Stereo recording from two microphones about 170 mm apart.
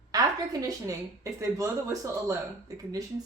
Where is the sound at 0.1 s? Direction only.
20° right (ahead or behind).